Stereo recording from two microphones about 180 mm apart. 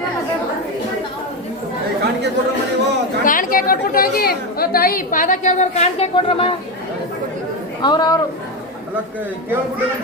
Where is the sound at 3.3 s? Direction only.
50° left (ahead or behind); by 6.5 s 30° left (ahead or behind).